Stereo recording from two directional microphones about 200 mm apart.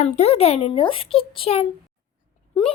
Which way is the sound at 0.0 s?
30° left (ahead or behind).